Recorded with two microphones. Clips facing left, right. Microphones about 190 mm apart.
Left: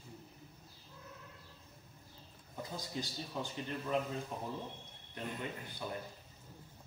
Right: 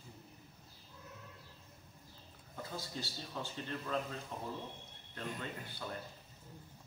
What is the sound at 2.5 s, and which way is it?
A man's voice, 15° left (ahead or behind).